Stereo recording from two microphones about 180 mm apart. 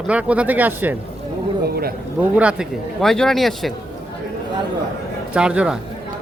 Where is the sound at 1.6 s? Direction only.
55° right (ahead or behind).